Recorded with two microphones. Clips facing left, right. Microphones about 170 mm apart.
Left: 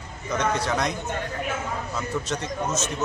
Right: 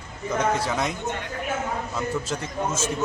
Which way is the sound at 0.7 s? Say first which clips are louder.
Left 1 dB; 5° right (ahead or behind).